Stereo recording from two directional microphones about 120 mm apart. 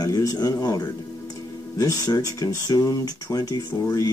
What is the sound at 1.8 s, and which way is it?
Speech, 30° left (ahead or behind).